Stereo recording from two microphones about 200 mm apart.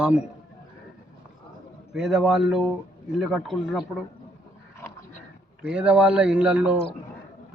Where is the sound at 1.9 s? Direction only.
Centre (ahead or behind).